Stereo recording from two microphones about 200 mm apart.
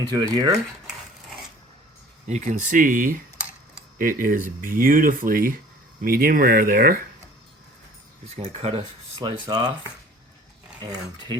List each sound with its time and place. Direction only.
0.0 s speech: 20° right (ahead or behind)
2.2 s speech: 35° right (ahead or behind)
8.4 s speech: 30° right (ahead or behind)
10.8 s speech: 20° right (ahead or behind)